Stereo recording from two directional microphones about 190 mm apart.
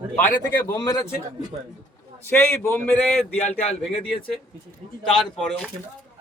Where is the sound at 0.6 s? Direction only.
20° left (ahead or behind).